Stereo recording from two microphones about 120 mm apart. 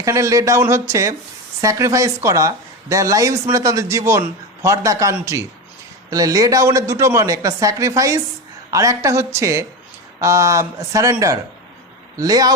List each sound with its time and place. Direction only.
0.0 s speech: 25° right (ahead or behind)